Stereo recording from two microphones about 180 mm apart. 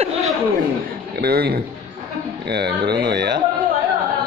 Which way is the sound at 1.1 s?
60° right (ahead or behind).